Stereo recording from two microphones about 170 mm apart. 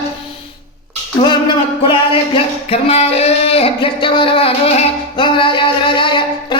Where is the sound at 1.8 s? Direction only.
30° left (ahead or behind).